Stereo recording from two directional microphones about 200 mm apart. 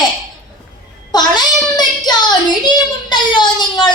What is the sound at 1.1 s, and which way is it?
Child singing, 20° left (ahead or behind).